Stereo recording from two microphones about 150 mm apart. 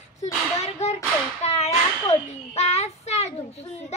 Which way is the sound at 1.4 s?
45° left (ahead or behind).